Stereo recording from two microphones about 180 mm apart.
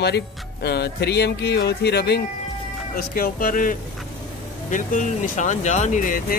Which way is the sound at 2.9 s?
50° left (ahead or behind).